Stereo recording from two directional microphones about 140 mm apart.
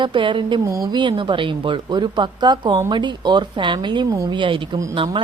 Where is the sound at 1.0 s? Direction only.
35° right (ahead or behind).